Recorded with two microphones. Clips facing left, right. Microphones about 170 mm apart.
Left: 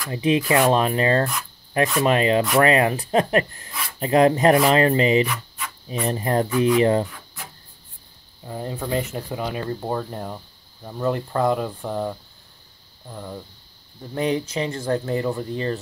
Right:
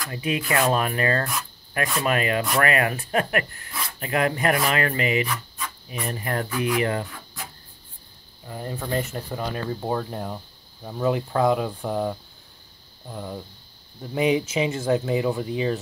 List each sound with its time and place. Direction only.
0.1 s speech: 25° left (ahead or behind)
8.5 s speech: 25° left (ahead or behind)
8.7 s speech: 5° left (ahead or behind)